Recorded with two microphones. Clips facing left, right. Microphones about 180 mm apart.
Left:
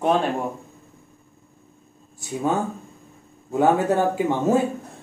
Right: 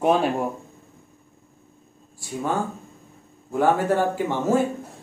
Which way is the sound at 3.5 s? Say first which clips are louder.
Left 1 dB; 20° left (ahead or behind).